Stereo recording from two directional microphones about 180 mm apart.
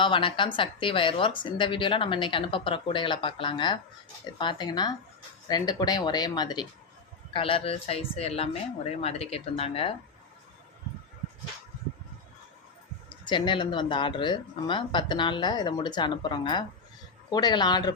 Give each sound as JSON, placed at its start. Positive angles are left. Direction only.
{"t": 0.0, "sound": "a woman's voice", "side_deg": 30}
{"t": 13.1, "sound": "a woman's voice", "side_deg": 25}